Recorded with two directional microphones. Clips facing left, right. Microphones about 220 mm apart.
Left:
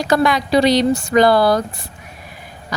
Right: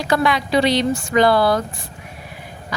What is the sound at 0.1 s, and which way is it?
A woman's voice, 40° left (ahead or behind).